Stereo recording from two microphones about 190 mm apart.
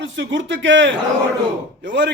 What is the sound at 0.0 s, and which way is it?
A man's voice, 75° right (ahead or behind).